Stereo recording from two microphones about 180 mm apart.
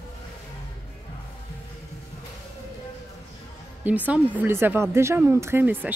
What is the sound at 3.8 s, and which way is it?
A woman's voice, 10° right (ahead or behind).